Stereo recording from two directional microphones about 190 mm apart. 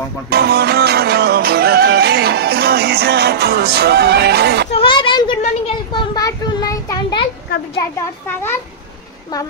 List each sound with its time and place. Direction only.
0.3 s music: 55° right (ahead or behind)
4.7 s a child's voice: 25° left (ahead or behind)
5.9 s a sound: 20° left (ahead or behind)